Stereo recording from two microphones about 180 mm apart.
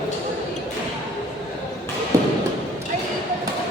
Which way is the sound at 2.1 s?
15° right (ahead or behind).